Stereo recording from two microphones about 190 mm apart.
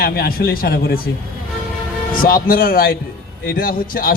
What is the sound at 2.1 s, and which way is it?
A man's voice, 50° left (ahead or behind).